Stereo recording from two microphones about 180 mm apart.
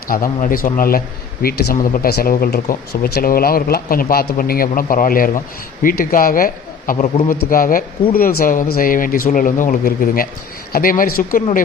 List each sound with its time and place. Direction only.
0.1 s a man's voice: 50° left (ahead or behind)